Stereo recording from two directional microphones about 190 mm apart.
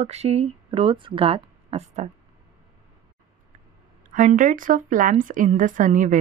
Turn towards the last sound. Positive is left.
turn(degrees=-40)  # may be behind; listen again after turning